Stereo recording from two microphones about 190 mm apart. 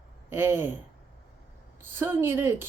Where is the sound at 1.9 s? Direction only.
10° right (ahead or behind).